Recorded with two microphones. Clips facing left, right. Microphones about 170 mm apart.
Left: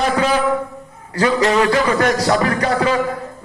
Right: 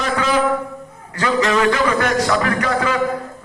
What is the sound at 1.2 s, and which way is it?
A man's voice, 35° left (ahead or behind).